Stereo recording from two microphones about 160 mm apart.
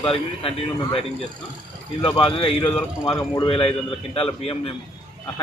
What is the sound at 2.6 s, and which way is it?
Speech, 10° left (ahead or behind).